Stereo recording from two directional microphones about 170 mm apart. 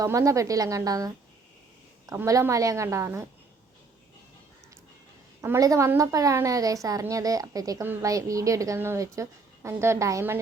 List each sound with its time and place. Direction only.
0.0 s a woman's voice: 20° right (ahead or behind)
5.4 s a woman's voice: 20° right (ahead or behind)